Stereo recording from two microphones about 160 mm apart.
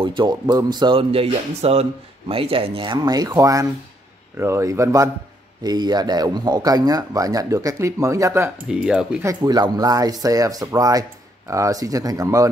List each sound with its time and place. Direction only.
0.0 s speech: 30° right (ahead or behind)
8.6 s speech: 5° right (ahead or behind)
9.2 s speech: 25° right (ahead or behind)